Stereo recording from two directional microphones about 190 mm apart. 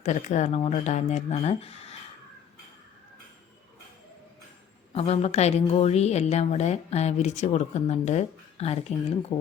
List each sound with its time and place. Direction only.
0.0 s a woman's voice: 40° left (ahead or behind)
4.9 s a woman's voice: 30° left (ahead or behind)